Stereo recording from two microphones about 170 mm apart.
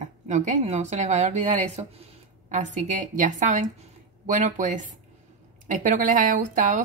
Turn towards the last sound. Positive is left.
turn(degrees=-50)  # may be behind; listen again after turning